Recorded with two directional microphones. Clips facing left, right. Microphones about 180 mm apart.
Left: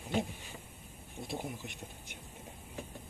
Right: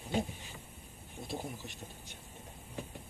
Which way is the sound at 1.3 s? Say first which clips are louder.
Left 1 dB; 20° left (ahead or behind).